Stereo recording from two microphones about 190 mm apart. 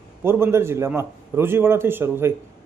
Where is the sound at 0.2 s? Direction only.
10° right (ahead or behind).